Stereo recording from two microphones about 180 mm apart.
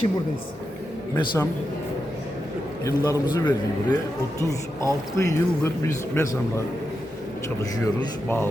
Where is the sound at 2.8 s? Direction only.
20° left (ahead or behind).